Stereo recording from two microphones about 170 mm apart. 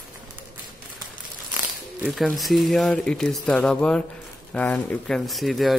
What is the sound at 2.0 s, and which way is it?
A man's voice, centre (ahead or behind).